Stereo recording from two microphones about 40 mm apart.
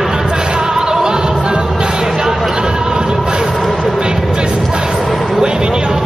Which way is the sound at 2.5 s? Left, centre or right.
Centre.